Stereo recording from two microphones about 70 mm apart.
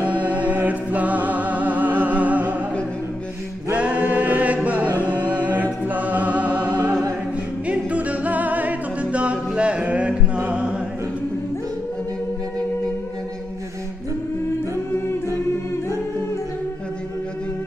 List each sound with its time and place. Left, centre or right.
0.0 s music: right
3.7 s choir: centre
4.6 s music: right
6.9 s a capella: right
7.6 s music: centre